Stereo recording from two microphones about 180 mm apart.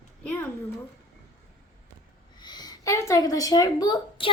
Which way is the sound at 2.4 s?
25° left (ahead or behind).